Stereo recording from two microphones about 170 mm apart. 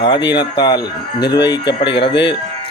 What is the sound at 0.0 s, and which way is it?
Speech, 25° left (ahead or behind).